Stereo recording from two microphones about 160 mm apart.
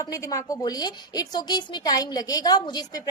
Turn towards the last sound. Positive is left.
turn(degrees=25)  # may be behind; listen again after turning